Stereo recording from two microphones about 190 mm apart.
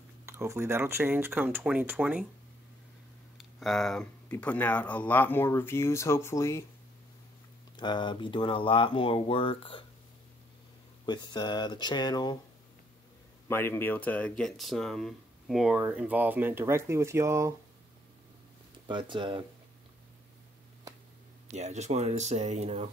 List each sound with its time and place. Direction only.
0.2 s speech: 15° right (ahead or behind)
3.3 s speech: centre (ahead or behind)
7.7 s speech: 25° left (ahead or behind)
11.1 s speech: 25° left (ahead or behind)
13.5 s speech: 10° left (ahead or behind); by 17.5 s 15° right (ahead or behind)
18.9 s speech: 25° right (ahead or behind)
21.5 s speech: 35° right (ahead or behind)